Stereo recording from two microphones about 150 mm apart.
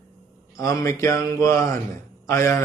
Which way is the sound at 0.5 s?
20° left (ahead or behind).